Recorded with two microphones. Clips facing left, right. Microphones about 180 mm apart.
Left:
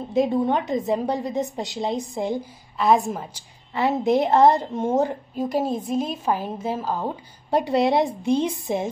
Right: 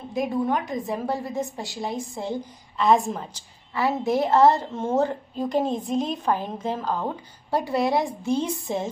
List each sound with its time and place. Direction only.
0.1 s a woman's voice: 25° left (ahead or behind)
2.8 s a woman's voice: centre (ahead or behind)
3.7 s a woman's voice: 20° left (ahead or behind)
7.5 s a woman's voice: 20° left (ahead or behind)